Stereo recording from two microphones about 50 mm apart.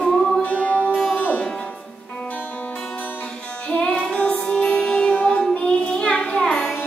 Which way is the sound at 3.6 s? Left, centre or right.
Centre.